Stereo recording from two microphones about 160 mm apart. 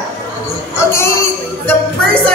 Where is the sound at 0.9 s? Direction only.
15° left (ahead or behind).